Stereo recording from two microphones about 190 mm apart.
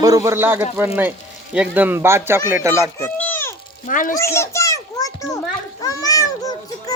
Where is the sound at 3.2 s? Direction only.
10° left (ahead or behind).